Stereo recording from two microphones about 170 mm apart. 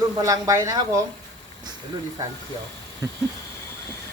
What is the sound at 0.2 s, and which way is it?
Speech, 20° right (ahead or behind).